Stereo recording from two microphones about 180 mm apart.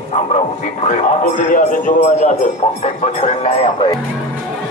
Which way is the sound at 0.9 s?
45° left (ahead or behind).